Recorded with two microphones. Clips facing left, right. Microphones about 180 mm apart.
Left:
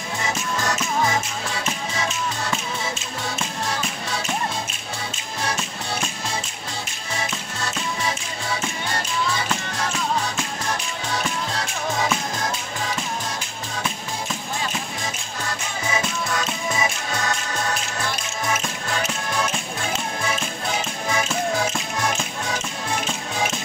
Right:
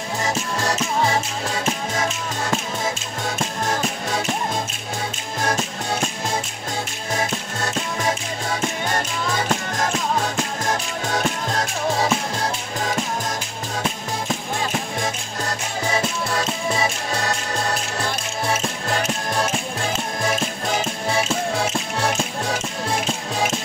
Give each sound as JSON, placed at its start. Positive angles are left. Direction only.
{"t": 0.2, "sound": "music", "side_deg": -35}
{"t": 3.3, "sound": "music", "side_deg": -45}
{"t": 5.4, "sound": "music", "side_deg": -45}
{"t": 7.2, "sound": "music", "side_deg": -50}
{"t": 15.4, "sound": "music", "side_deg": -35}